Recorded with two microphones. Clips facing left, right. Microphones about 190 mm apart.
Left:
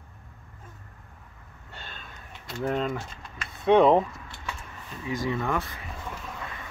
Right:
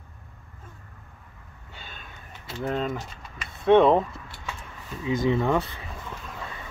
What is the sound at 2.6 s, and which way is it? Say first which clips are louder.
Speech: even; centre (ahead or behind).